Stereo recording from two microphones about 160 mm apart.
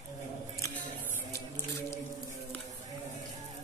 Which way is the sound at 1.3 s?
15° left (ahead or behind).